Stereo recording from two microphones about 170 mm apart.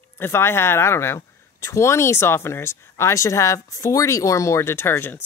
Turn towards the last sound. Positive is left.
turn(degrees=15)  # may be behind; listen again after turning